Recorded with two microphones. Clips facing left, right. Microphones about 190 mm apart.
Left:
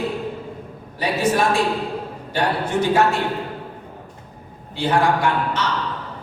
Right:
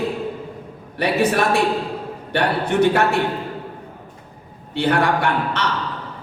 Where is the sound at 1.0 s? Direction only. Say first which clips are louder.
Right 1 dB; 65° right (ahead or behind).